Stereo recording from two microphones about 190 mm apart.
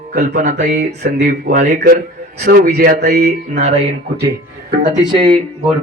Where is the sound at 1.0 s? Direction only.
50° right (ahead or behind).